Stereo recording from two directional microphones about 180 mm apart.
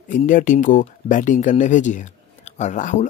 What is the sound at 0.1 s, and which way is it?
Speech, 45° left (ahead or behind).